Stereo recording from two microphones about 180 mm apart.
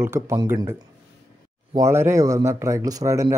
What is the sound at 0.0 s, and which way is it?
Speech, 15° right (ahead or behind).